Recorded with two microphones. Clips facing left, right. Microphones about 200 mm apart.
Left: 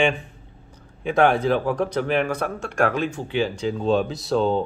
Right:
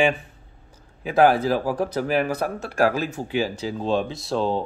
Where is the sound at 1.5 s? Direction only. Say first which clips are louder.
Left 1 dB; 35° right (ahead or behind).